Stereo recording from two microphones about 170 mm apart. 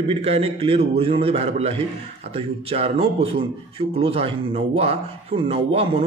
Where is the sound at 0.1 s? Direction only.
35° right (ahead or behind).